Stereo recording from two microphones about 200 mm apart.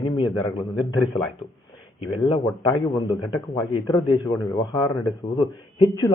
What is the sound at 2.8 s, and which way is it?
Speech, 20° left (ahead or behind).